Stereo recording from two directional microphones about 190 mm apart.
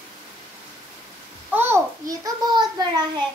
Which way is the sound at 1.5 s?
15° right (ahead or behind).